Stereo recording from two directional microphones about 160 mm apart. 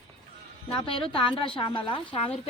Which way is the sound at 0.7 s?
35° left (ahead or behind).